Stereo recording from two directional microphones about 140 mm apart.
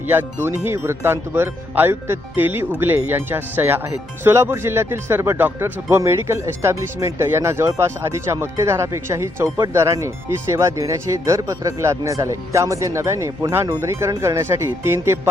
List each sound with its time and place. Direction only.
0.1 s speech: 15° right (ahead or behind)